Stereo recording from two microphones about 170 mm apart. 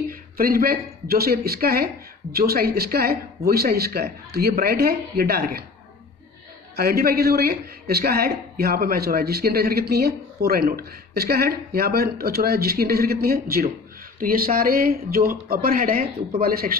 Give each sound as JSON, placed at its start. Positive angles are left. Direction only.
{"t": 0.1, "sound": "a man's voice", "side_deg": -60}
{"t": 6.8, "sound": "a man's voice", "side_deg": -65}